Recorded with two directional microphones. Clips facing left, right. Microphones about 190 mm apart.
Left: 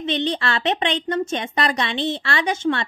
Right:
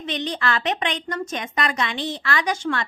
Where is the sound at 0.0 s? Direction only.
25° left (ahead or behind).